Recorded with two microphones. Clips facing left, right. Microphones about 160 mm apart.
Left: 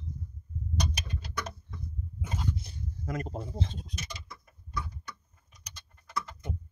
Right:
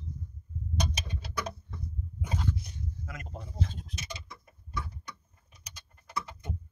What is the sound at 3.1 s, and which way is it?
Speech, 35° left (ahead or behind).